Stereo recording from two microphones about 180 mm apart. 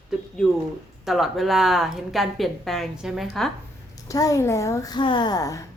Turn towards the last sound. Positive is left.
turn(degrees=20)  # may be behind; listen again after turning